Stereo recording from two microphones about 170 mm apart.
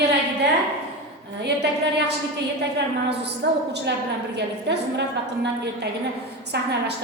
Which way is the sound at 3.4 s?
90° right.